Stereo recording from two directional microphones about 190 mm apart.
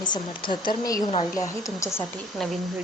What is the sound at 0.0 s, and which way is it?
Speech, 25° left (ahead or behind).